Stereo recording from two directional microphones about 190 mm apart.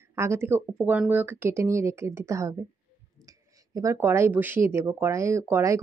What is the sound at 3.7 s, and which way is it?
Speech, 15° right (ahead or behind).